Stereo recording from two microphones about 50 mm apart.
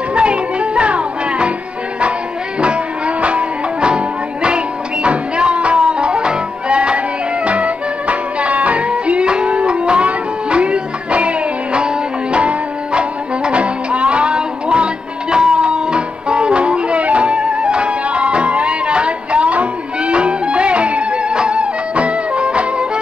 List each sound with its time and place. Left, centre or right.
0.1 s music: right
2.6 s music: right